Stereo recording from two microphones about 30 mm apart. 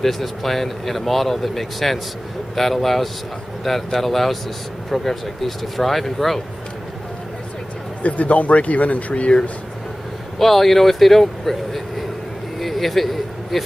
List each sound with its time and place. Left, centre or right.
0.0 s speech: centre
4.9 s speech: centre
5.6 s speech: centre
8.0 s speech: left
9.1 s speech: left
10.4 s speech: centre
12.5 s a sound: centre